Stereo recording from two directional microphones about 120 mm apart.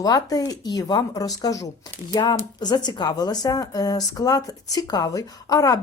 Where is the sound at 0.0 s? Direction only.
30° left (ahead or behind).